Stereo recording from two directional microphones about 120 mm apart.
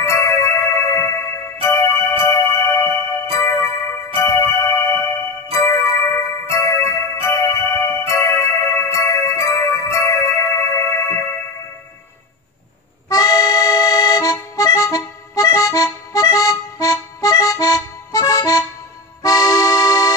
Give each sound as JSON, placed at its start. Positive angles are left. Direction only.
{"t": 0.0, "sound": "music", "side_deg": 25}
{"t": 6.5, "sound": "jingle bell", "side_deg": 25}
{"t": 8.1, "sound": "music", "side_deg": 25}
{"t": 13.1, "sound": "accordion", "side_deg": 30}